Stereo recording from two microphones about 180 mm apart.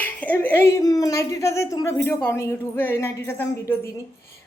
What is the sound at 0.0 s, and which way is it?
A woman's voice, 10° left (ahead or behind).